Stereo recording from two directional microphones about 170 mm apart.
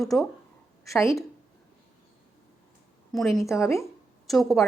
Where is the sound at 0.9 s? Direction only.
15° left (ahead or behind).